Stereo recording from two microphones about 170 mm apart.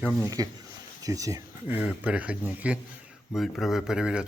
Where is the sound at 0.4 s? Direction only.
20° right (ahead or behind).